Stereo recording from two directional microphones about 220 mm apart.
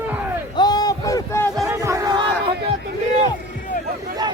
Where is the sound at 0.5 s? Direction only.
20° left (ahead or behind).